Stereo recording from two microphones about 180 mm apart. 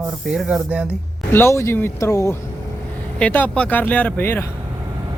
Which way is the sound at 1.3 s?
15° left (ahead or behind).